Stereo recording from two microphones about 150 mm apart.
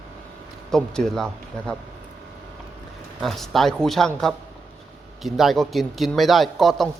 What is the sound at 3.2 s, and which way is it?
Speech, centre (ahead or behind).